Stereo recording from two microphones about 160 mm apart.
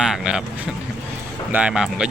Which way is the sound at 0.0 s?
5° right (ahead or behind).